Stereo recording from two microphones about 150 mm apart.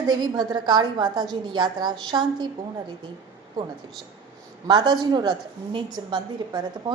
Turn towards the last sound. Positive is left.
turn(degrees=-30)  # may be behind; listen again after turning